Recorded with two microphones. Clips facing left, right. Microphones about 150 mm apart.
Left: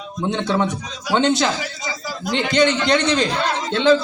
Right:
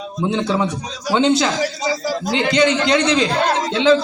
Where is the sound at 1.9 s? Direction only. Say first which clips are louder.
Right 7 dB; 35° right (ahead or behind).